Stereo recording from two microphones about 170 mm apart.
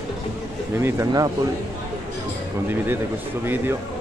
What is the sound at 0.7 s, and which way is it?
Speech, 15° right (ahead or behind).